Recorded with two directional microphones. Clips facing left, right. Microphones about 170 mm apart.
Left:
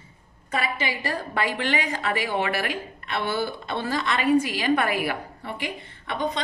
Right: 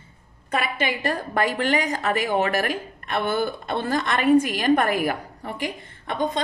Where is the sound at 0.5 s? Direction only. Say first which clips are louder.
Right 3 dB; 55° right (ahead or behind).